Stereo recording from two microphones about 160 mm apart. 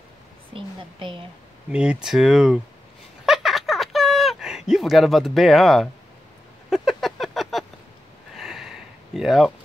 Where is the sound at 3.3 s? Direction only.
Centre (ahead or behind).